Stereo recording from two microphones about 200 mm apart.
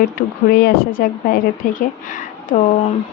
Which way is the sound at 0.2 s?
50° left (ahead or behind).